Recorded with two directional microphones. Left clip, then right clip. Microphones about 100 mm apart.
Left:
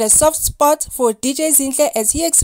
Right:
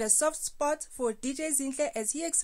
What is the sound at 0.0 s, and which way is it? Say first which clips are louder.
Speech: left 14 dB; 35° left (ahead or behind).